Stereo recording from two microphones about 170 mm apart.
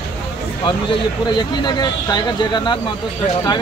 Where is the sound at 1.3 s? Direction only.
25° left (ahead or behind).